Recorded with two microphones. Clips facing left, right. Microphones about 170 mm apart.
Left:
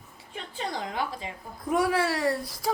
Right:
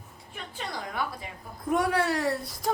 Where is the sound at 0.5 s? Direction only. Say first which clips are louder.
Left 4 dB; 25° left (ahead or behind).